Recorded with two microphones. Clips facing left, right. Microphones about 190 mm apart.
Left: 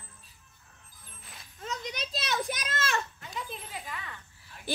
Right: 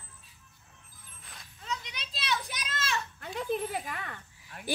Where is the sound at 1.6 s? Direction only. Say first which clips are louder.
Left 3 dB; 45° left (ahead or behind).